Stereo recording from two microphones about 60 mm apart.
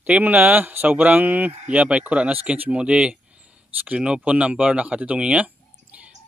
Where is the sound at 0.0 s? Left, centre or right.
Right.